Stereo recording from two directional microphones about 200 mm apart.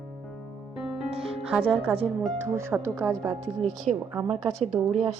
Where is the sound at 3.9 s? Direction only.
35° right (ahead or behind).